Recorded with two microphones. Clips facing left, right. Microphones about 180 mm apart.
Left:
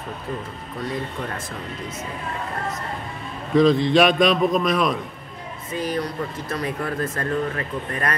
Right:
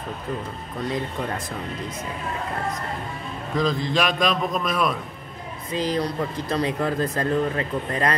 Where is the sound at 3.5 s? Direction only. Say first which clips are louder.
Left 7 dB; centre (ahead or behind).